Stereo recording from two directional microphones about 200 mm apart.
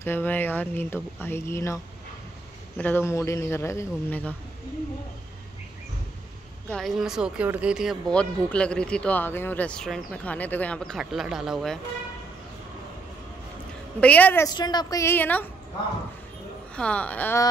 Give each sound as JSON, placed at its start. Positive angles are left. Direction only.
{"t": 0.0, "sound": "speech", "side_deg": 10}
{"t": 2.8, "sound": "speech", "side_deg": 10}
{"t": 6.7, "sound": "speech", "side_deg": 0}
{"t": 13.9, "sound": "speech", "side_deg": 5}
{"t": 14.5, "sound": "speech", "side_deg": 20}
{"t": 16.7, "sound": "speech", "side_deg": 5}